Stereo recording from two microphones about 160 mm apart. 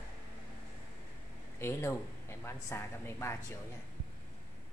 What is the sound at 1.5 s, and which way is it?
Speech, 15° left (ahead or behind).